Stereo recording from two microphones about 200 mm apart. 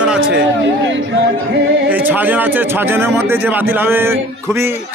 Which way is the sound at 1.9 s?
10° right (ahead or behind).